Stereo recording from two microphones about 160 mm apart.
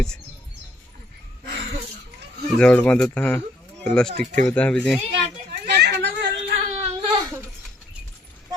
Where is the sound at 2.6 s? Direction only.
5° left (ahead or behind).